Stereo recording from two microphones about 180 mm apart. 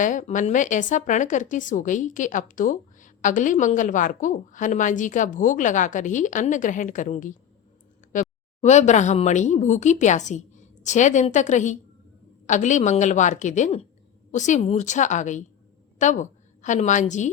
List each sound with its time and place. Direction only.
0.0 s a woman's voice: 45° left (ahead or behind)